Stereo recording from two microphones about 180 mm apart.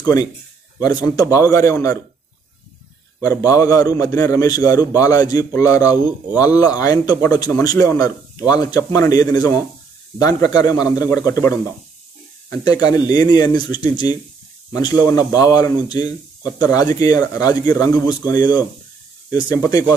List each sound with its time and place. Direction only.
0.0 s a man's voice: 20° left (ahead or behind)
3.2 s a man's voice: 20° left (ahead or behind)
14.8 s a man's voice: 20° left (ahead or behind)